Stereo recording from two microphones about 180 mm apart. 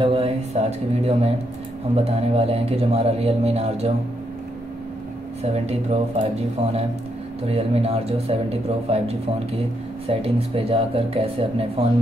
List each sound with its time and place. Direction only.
0.0 s speech: 35° right (ahead or behind)
5.4 s speech: 35° right (ahead or behind)
7.4 s speech: 35° right (ahead or behind)